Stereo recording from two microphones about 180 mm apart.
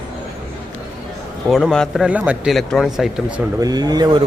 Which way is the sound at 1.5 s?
Centre (ahead or behind).